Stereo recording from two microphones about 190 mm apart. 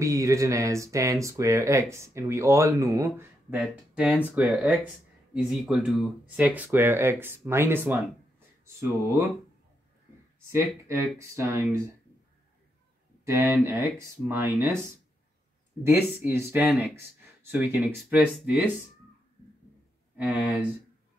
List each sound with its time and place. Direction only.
0.0 s speech: 15° right (ahead or behind)
10.5 s speech: 15° right (ahead or behind)
13.2 s speech: 15° right (ahead or behind)
15.8 s speech: 10° right (ahead or behind)
20.2 s speech: 5° right (ahead or behind)